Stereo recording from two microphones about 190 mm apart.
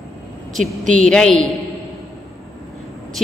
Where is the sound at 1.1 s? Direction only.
5° left (ahead or behind).